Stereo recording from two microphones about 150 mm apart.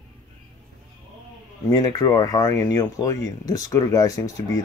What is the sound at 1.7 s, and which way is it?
Speech, 25° left (ahead or behind).